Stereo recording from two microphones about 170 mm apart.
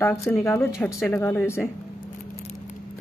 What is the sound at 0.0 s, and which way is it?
Speech, 15° left (ahead or behind).